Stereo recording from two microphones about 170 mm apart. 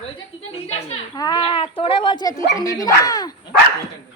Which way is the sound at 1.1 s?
25° left (ahead or behind).